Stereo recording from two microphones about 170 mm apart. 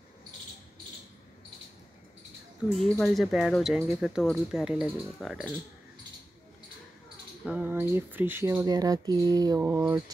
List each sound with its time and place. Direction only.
2.7 s speech: centre (ahead or behind)
7.4 s speech: 10° right (ahead or behind)